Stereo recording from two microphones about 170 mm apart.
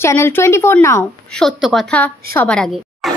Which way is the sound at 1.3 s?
Centre (ahead or behind).